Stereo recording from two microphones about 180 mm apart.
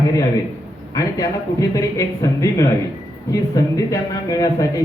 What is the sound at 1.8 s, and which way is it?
A man's voice, 20° left (ahead or behind).